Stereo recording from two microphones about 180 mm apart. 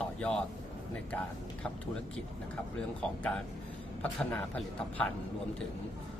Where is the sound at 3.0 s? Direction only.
5° left (ahead or behind).